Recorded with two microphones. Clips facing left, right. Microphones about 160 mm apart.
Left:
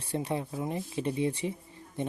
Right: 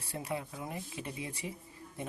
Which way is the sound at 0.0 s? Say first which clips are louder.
Left 6 dB; 30° left (ahead or behind).